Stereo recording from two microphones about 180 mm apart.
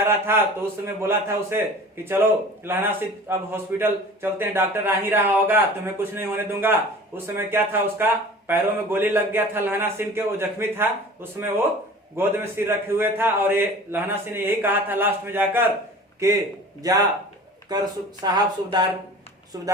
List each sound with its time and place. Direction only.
0.0 s speech: 15° right (ahead or behind)
2.6 s speech: 15° right (ahead or behind)
16.8 s speech: 20° right (ahead or behind)